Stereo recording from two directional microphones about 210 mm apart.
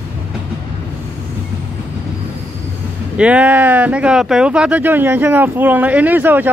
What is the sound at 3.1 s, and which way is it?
Speech, 5° right (ahead or behind).